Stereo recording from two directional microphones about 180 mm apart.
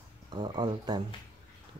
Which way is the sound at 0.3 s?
25° right (ahead or behind).